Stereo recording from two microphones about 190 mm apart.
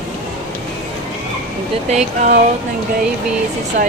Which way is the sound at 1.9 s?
35° right (ahead or behind).